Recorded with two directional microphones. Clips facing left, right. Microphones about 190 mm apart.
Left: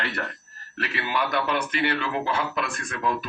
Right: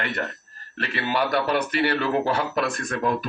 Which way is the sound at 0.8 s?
30° right (ahead or behind).